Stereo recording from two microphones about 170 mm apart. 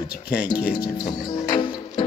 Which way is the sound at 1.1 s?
25° left (ahead or behind).